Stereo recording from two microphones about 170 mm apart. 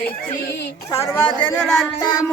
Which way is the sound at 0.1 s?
65° left (ahead or behind).